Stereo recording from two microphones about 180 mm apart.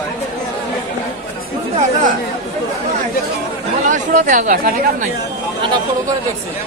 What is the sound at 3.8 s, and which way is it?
Speech, 45° right (ahead or behind).